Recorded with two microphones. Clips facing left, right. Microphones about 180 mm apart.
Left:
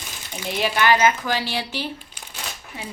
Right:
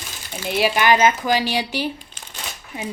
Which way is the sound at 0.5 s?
10° right (ahead or behind).